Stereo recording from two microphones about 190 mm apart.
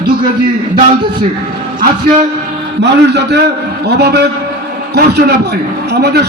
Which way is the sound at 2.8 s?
60° right (ahead or behind).